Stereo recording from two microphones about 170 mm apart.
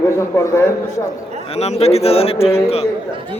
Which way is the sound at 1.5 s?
40° left (ahead or behind).